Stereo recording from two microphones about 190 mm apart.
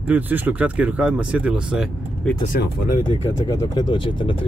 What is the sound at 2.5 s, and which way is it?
Speech, 45° left (ahead or behind).